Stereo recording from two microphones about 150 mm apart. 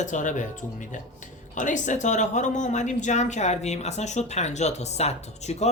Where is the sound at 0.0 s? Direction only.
55° left (ahead or behind).